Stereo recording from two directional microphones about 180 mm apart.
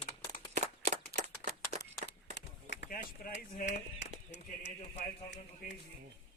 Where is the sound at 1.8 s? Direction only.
70° left (ahead or behind).